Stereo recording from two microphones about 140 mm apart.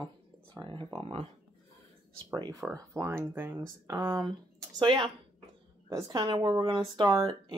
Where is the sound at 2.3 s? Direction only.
25° right (ahead or behind).